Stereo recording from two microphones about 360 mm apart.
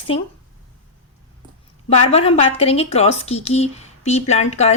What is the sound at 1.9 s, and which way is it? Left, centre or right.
A woman's voice, centre.